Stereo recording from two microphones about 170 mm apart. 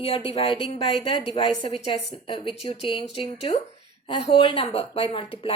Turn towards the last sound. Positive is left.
turn(degrees=30)  # may be behind; listen again after turning